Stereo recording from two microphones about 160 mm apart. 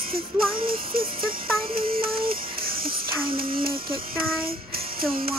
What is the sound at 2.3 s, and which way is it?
Music, 65° right (ahead or behind).